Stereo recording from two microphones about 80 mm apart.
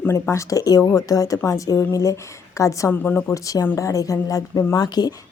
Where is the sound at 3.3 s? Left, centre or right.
Left.